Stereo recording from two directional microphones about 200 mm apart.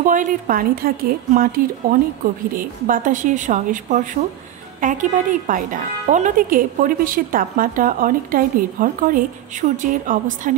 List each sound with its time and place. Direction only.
0.0 s a woman's voice: 40° right (ahead or behind)